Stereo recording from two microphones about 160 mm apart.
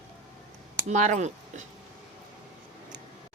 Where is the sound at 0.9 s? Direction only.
45° right (ahead or behind).